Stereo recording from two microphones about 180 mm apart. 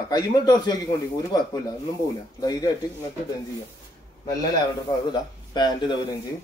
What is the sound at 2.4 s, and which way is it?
Speech, 20° left (ahead or behind).